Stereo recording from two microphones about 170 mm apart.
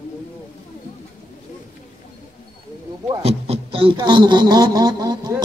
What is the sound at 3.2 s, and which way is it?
Speech, 35° right (ahead or behind).